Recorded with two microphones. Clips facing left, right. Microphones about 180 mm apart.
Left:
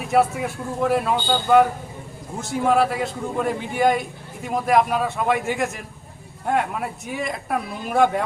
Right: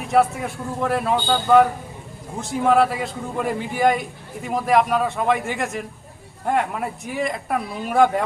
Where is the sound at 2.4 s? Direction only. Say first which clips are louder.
Right 2 dB; centre (ahead or behind).